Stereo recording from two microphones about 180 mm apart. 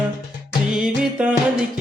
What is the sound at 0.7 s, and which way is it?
Music, 5° right (ahead or behind).